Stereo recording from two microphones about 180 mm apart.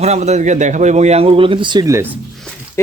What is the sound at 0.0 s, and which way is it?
Speech, 40° right (ahead or behind).